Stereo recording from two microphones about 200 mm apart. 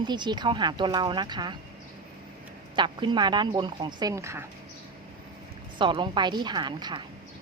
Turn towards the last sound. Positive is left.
turn(degrees=-20)  # may be behind; listen again after turning